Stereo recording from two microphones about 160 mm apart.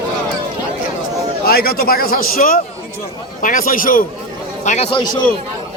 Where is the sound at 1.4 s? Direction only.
70° left (ahead or behind).